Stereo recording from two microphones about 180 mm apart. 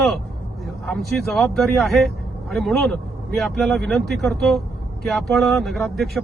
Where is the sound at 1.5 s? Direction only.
Centre (ahead or behind).